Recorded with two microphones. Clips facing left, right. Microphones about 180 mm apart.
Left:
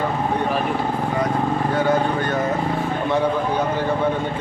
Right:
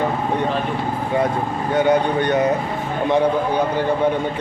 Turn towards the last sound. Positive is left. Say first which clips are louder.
# right 3 dB
turn(degrees=-20)  # may be behind; listen again after turning